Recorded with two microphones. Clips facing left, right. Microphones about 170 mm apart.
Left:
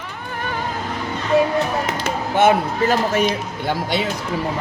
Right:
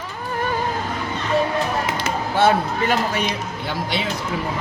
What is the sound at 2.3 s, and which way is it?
Speech, 20° left (ahead or behind).